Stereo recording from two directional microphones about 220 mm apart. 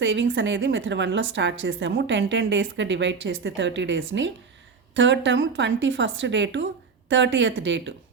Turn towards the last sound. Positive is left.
turn(degrees=-55)  # may be behind; listen again after turning